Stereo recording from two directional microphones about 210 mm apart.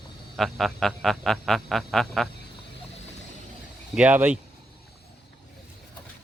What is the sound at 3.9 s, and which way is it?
Speech, 5° right (ahead or behind).